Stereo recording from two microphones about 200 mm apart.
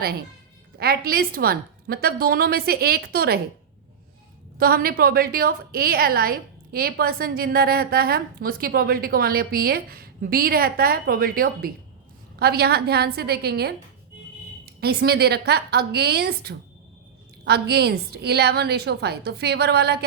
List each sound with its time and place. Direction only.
0.8 s a woman's voice: 50° right (ahead or behind)
4.5 s a woman's voice: 50° right (ahead or behind)